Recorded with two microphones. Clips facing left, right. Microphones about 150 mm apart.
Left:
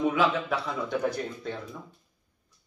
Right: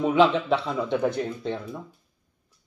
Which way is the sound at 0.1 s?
30° right (ahead or behind).